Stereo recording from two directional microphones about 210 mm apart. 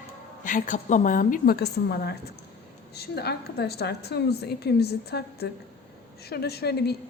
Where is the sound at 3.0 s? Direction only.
50° left (ahead or behind).